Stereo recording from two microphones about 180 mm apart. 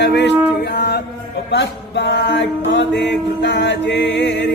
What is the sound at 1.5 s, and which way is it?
Music, 70° left (ahead or behind).